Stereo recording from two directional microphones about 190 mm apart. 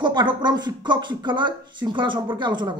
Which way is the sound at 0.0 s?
25° right (ahead or behind).